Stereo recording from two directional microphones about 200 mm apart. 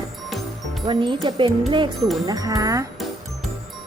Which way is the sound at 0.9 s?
25° right (ahead or behind).